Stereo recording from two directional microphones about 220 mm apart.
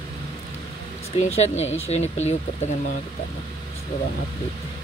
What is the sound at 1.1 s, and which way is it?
Speech, 30° left (ahead or behind).